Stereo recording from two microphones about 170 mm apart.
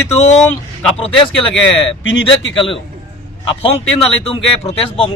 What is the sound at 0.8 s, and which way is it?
Speech, 35° left (ahead or behind).